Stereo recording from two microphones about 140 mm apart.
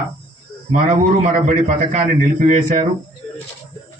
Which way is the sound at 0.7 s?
60° right (ahead or behind).